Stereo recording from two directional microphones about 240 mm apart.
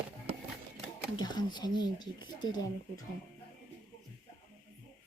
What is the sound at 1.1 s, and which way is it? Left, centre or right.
Speech, centre.